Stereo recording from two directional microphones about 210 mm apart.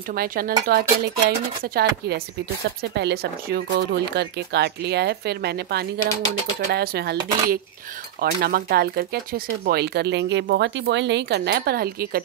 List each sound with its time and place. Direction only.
0.1 s speech: 45° right (ahead or behind)